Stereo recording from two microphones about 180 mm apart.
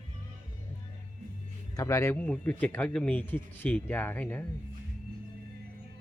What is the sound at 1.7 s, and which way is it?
Speech, 15° left (ahead or behind).